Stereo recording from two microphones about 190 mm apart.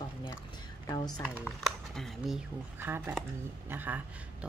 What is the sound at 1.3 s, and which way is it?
A woman's voice, centre (ahead or behind).